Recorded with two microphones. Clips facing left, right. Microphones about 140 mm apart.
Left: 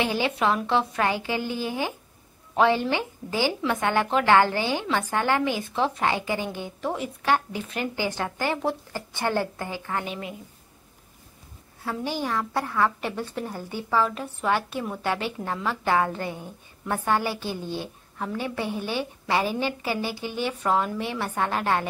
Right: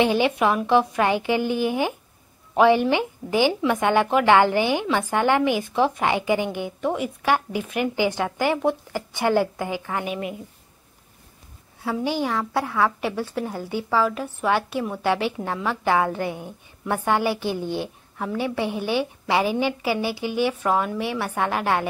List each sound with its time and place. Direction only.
0.0 s a woman's voice: 20° right (ahead or behind)
6.8 s speech: centre (ahead or behind)
7.2 s a woman's voice: 15° right (ahead or behind)
11.8 s a woman's voice: 15° right (ahead or behind)
18.1 s a woman's voice: 5° right (ahead or behind)
18.6 s a woman's voice: 15° right (ahead or behind)